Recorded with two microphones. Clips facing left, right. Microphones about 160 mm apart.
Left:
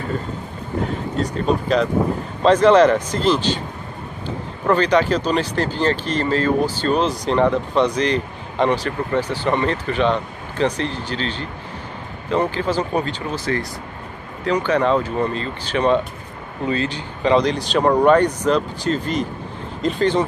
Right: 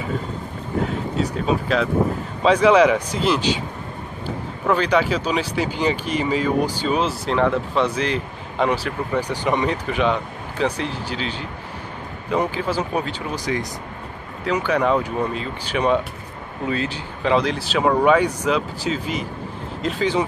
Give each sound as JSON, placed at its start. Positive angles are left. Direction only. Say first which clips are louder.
{"t": 0.8, "sound": "speech", "louder": "even", "side_deg": -5}
{"t": 4.6, "sound": "speech", "louder": "left 2 dB", "side_deg": -5}